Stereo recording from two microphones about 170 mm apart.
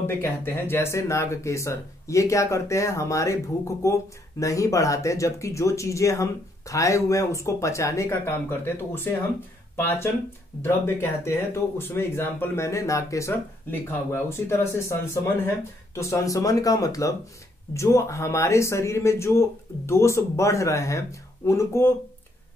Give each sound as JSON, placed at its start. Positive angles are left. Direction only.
{"t": 0.0, "sound": "speech", "side_deg": 15}